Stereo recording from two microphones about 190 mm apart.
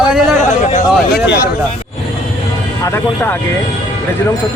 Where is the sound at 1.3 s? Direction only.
55° left (ahead or behind).